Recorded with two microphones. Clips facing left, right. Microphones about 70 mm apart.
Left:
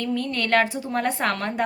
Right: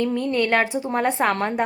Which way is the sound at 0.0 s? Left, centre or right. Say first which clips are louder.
Right 4 dB; right.